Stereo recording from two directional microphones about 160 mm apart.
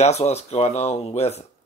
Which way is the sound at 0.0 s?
45° left (ahead or behind).